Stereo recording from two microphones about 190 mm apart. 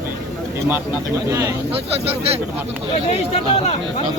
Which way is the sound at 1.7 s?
30° right (ahead or behind).